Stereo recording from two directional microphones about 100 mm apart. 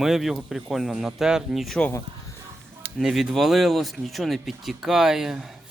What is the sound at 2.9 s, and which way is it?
Speech, 5° right (ahead or behind).